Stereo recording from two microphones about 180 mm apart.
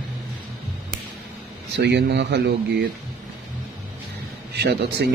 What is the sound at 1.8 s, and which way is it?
Speech, 70° right (ahead or behind).